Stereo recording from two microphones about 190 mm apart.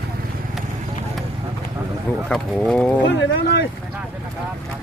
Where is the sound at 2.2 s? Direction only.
5° left (ahead or behind).